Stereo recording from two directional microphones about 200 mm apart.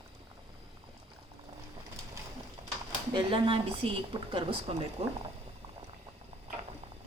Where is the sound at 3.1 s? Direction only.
25° right (ahead or behind).